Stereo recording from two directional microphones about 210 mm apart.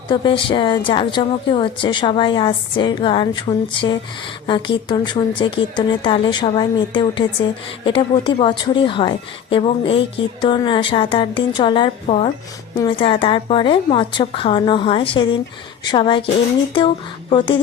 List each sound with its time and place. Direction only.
0.1 s a woman's voice: 25° left (ahead or behind)